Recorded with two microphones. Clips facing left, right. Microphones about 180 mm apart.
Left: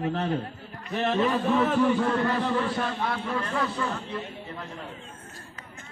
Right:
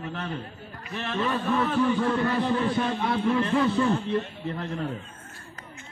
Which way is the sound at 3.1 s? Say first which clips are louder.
Right 6 dB; 25° right (ahead or behind).